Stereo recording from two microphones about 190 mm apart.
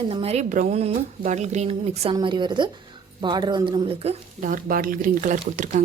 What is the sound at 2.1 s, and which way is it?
A woman's voice, 25° right (ahead or behind).